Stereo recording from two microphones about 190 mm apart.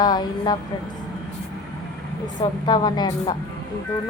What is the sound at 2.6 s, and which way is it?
Speech, 25° left (ahead or behind).